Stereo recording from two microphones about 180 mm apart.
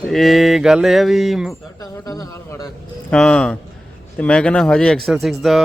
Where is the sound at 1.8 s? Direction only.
20° left (ahead or behind).